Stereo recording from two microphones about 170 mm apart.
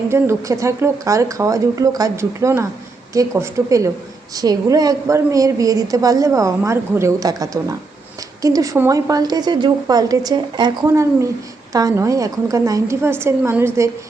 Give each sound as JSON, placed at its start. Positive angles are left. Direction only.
{"t": 0.1, "sound": "a woman's voice", "side_deg": -15}